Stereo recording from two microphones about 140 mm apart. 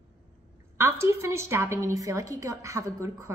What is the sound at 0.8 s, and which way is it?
A woman's voice, 20° right (ahead or behind).